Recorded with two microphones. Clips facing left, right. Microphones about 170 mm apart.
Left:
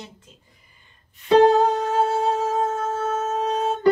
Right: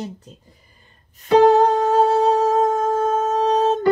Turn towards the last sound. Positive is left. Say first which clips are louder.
# right 6 dB
turn(degrees=-35)  # may be behind; listen again after turning